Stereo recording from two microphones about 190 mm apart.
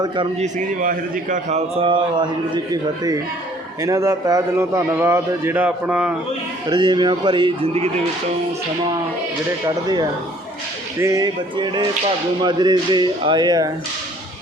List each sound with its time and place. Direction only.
0.0 s speech: 25° right (ahead or behind)
0.4 s a man's voice: 45° right (ahead or behind); by 2.2 s 25° right (ahead or behind)
3.8 s a man's voice: 15° right (ahead or behind)
6.7 s speech: 25° right (ahead or behind)
9.6 s speech: 20° right (ahead or behind)